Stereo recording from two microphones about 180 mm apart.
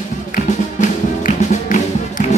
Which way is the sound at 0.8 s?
45° left (ahead or behind).